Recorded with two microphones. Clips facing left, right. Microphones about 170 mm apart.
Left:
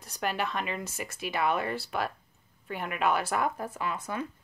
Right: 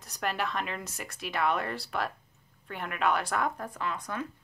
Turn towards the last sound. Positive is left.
turn(degrees=5)  # may be behind; listen again after turning